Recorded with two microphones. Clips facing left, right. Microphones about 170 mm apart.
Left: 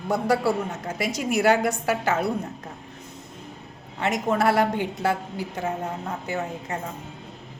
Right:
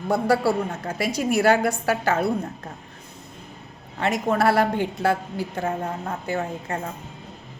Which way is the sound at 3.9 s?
20° left (ahead or behind).